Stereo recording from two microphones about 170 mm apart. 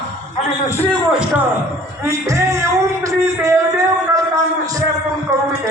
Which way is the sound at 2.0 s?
15° right (ahead or behind).